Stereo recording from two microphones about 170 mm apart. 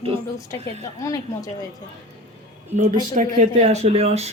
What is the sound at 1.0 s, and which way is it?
Speech, 20° left (ahead or behind).